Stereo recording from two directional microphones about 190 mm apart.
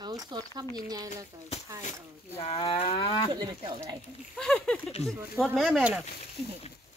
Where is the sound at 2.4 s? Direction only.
30° left (ahead or behind).